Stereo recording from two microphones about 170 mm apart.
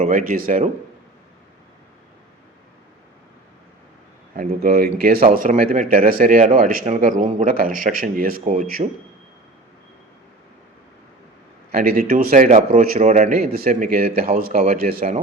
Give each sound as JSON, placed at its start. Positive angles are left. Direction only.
{"t": 0.0, "sound": "speech", "side_deg": -55}
{"t": 4.4, "sound": "speech", "side_deg": -60}
{"t": 5.4, "sound": "speech", "side_deg": -50}
{"t": 11.7, "sound": "speech", "side_deg": -60}
{"t": 13.5, "sound": "speech", "side_deg": -60}